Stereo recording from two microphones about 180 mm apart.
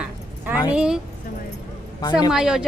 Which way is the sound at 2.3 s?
5° right (ahead or behind).